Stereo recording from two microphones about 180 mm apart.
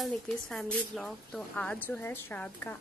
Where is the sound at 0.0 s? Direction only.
5° left (ahead or behind).